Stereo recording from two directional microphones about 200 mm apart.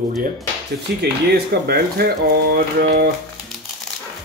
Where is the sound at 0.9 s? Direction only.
50° right (ahead or behind).